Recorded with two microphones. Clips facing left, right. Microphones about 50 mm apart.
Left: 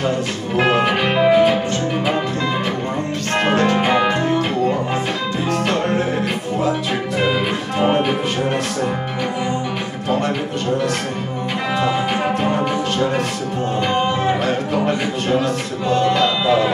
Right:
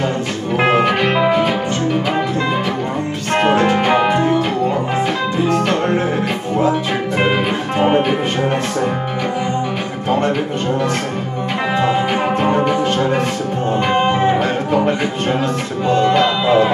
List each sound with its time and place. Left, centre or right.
0.6 s music: centre
3.3 s music: centre
11.8 s music: centre
15.9 s speech: right